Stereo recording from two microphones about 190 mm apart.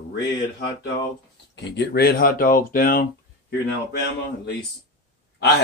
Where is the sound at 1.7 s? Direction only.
60° left (ahead or behind).